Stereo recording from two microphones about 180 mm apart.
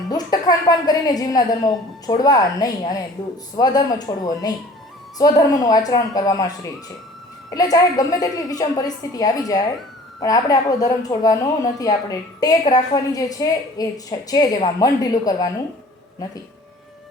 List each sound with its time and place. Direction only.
0.1 s a woman's voice: 20° left (ahead or behind)
7.5 s a woman's voice: 20° left (ahead or behind)